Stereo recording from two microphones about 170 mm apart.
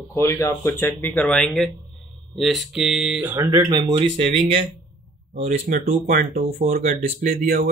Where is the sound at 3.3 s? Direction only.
20° right (ahead or behind); by 6.0 s 40° right (ahead or behind).